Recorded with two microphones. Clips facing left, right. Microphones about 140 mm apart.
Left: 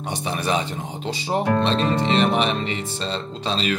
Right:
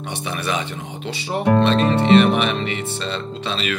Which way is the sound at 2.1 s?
35° left (ahead or behind).